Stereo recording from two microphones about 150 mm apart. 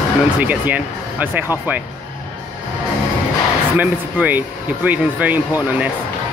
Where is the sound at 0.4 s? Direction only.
10° right (ahead or behind).